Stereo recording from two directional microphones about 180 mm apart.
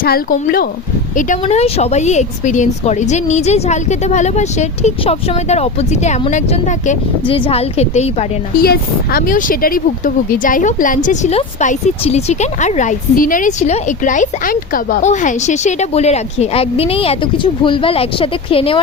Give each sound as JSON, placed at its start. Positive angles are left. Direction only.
{"t": 0.0, "sound": "speech", "side_deg": 55}
{"t": 1.1, "sound": "speech", "side_deg": 40}
{"t": 7.3, "sound": "speech", "side_deg": 30}
{"t": 8.6, "sound": "speech", "side_deg": 60}